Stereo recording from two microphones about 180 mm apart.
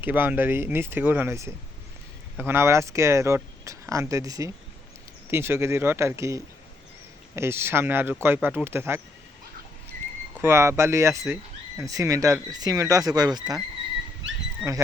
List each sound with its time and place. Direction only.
0.0 s speech: 10° right (ahead or behind)
10.4 s speech: 15° right (ahead or behind)
14.6 s speech: 5° right (ahead or behind)